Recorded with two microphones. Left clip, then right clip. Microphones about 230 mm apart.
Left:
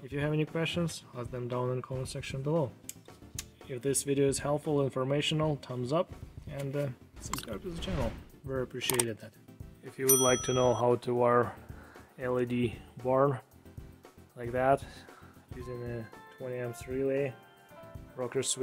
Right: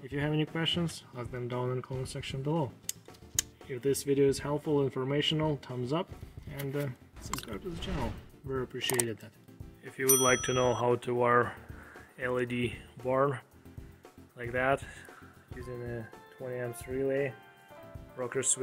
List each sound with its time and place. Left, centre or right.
0.0 s speech: centre
10.2 s speech: centre
12.2 s speech: left
15.5 s speech: centre